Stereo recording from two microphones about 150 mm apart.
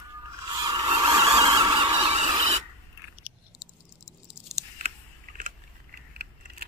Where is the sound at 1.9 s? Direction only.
45° right (ahead or behind).